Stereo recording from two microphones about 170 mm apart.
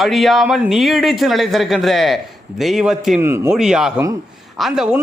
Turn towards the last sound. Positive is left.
turn(degrees=-5)  # may be behind; listen again after turning